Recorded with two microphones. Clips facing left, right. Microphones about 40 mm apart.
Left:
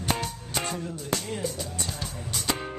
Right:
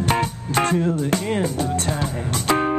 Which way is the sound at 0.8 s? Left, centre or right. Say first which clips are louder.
Right 11 dB; right.